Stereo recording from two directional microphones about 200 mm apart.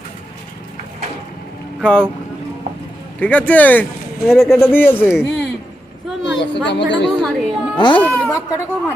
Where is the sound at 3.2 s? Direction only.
10° left (ahead or behind).